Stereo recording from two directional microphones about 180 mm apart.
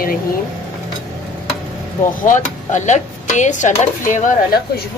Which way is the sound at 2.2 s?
45° left (ahead or behind).